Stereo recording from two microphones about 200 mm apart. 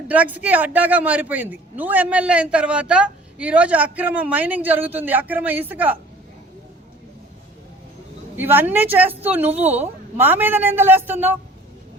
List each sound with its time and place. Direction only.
0.1 s a man's voice: 5° right (ahead or behind)
8.4 s a man's voice: 10° right (ahead or behind)